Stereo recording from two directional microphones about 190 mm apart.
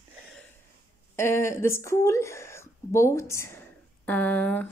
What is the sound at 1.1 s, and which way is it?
A woman's voice, 15° left (ahead or behind).